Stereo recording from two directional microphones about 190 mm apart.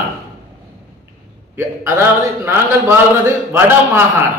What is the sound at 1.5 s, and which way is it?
A man's voice, 15° right (ahead or behind).